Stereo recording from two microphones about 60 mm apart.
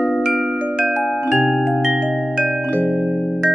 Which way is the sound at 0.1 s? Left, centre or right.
Centre.